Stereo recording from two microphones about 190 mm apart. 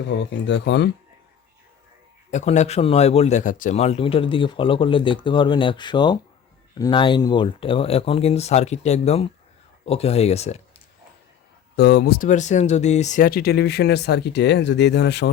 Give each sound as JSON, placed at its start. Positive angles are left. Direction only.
{"t": 0.3, "sound": "speech", "side_deg": 70}
{"t": 2.3, "sound": "speech", "side_deg": 40}
{"t": 11.8, "sound": "speech", "side_deg": 60}